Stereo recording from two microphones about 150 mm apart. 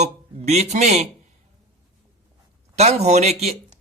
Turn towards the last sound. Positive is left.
turn(degrees=-45)  # may be behind; listen again after turning